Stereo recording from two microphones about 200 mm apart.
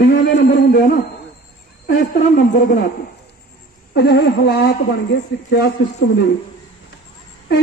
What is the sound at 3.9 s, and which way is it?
Speech, 55° left (ahead or behind).